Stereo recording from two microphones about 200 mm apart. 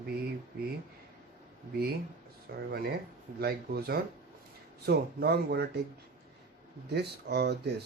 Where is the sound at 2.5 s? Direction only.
50° right (ahead or behind).